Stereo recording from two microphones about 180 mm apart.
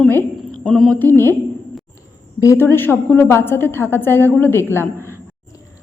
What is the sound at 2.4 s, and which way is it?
A woman's voice, 15° left (ahead or behind).